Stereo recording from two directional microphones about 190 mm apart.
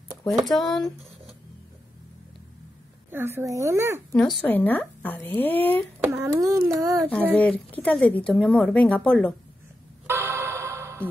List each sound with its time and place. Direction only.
0.4 s speech: centre (ahead or behind)
3.1 s speech: 10° right (ahead or behind)
4.1 s speech: 5° left (ahead or behind)
6.0 s speech: 15° right (ahead or behind)
7.0 s speech: 5° left (ahead or behind)
10.0 s music: 15° right (ahead or behind)